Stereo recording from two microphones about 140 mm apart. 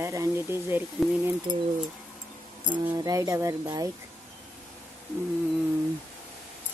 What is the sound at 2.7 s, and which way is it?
Speech, 25° right (ahead or behind).